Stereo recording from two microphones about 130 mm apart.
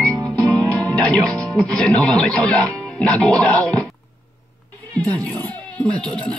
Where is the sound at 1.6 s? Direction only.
5° left (ahead or behind).